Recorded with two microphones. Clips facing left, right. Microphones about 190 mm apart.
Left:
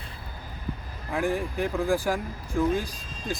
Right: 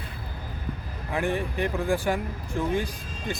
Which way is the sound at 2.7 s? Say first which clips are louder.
Right 1 dB; 60° right (ahead or behind).